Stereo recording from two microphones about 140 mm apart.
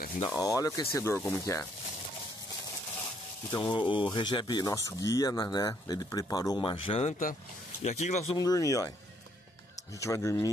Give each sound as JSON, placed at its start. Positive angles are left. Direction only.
{"t": 0.2, "sound": "speech", "side_deg": 20}
{"t": 3.5, "sound": "speech", "side_deg": 35}
{"t": 4.7, "sound": "speech", "side_deg": 20}
{"t": 7.1, "sound": "speech", "side_deg": 75}
{"t": 7.8, "sound": "speech", "side_deg": 55}
{"t": 8.4, "sound": "speech", "side_deg": 25}
{"t": 9.9, "sound": "speech", "side_deg": 20}